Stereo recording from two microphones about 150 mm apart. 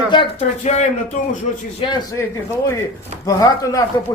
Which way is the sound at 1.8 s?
30° left (ahead or behind).